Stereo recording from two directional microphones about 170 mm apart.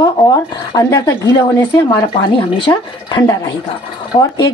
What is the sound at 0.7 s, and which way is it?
Speech, 20° left (ahead or behind).